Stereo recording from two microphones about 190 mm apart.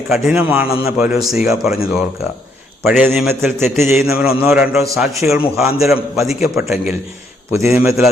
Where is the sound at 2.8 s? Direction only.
5° right (ahead or behind).